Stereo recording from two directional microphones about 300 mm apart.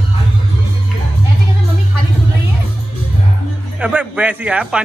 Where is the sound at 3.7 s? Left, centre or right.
Centre.